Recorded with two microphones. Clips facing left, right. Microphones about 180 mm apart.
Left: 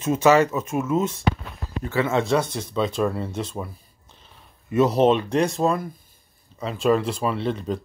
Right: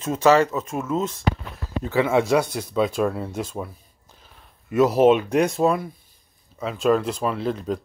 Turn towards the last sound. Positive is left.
turn(degrees=0)  # may be behind; listen again after turning